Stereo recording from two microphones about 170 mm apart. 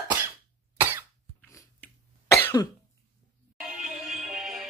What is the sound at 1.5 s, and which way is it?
Cough, 15° left (ahead or behind).